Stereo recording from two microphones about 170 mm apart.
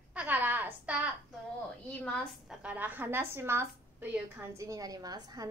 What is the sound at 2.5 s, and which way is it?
A woman's voice, 5° right (ahead or behind).